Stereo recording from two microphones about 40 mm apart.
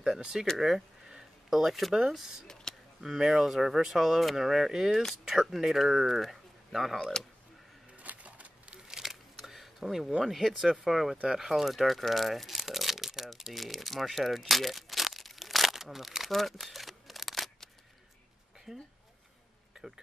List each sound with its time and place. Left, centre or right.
0.6 s speech: centre
2.4 s a sound: centre
3.0 s speech: centre
7.0 s speech: centre
8.0 s a sound: right
8.8 s a sound: centre
10.2 s speech: centre
12.1 s crumpling: centre
13.5 s speech: centre
16.3 s camera: centre
18.7 s speech: centre
19.7 s a sound: centre